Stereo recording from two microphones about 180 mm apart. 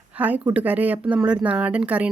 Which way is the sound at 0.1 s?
10° right (ahead or behind).